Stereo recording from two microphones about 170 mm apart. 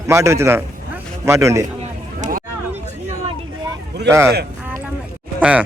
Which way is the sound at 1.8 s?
45° right (ahead or behind).